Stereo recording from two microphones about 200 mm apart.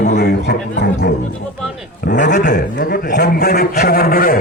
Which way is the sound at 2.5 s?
55° left (ahead or behind).